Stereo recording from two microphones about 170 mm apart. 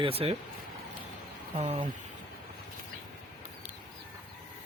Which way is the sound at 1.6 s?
35° right (ahead or behind).